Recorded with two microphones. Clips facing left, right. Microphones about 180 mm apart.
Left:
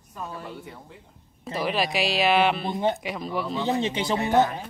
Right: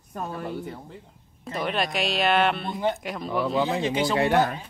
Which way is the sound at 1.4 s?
Centre (ahead or behind).